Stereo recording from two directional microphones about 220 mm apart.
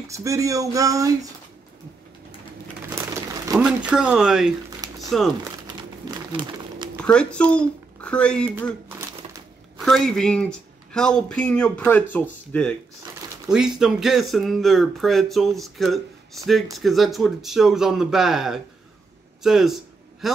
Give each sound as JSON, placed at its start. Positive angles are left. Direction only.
{"t": 0.1, "sound": "speech", "side_deg": -15}
{"t": 3.5, "sound": "speech", "side_deg": -5}
{"t": 4.6, "sound": "a sound", "side_deg": -15}
{"t": 7.0, "sound": "speech", "side_deg": 5}
{"t": 9.8, "sound": "speech", "side_deg": 0}
{"t": 19.4, "sound": "a sound", "side_deg": 0}